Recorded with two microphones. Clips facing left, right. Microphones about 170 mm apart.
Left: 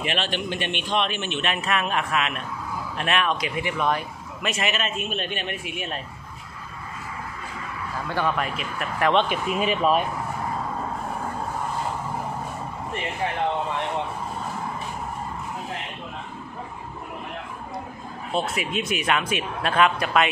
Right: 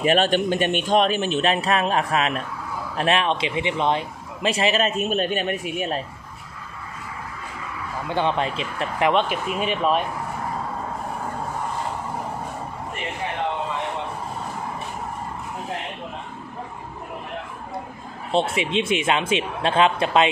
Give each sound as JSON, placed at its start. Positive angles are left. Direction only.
{"t": 0.0, "sound": "a man's voice", "side_deg": -45}
{"t": 8.1, "sound": "speech", "side_deg": -25}
{"t": 9.1, "sound": "speech", "side_deg": 0}
{"t": 18.3, "sound": "speech", "side_deg": -25}